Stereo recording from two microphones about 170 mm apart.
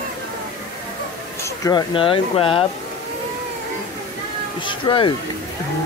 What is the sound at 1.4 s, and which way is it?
Speech, 20° left (ahead or behind).